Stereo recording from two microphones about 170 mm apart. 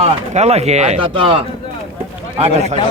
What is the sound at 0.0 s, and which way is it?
Speech, 40° right (ahead or behind).